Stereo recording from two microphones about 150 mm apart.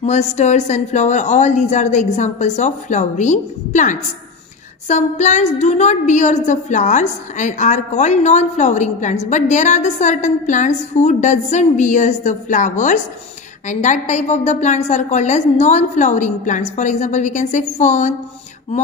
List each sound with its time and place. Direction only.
0.0 s a woman's voice: 50° left (ahead or behind)